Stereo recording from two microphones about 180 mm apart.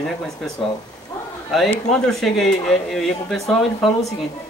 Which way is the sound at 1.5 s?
Centre (ahead or behind).